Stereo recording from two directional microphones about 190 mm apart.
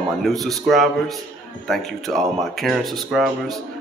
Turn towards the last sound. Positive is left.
turn(degrees=0)  # may be behind; listen again after turning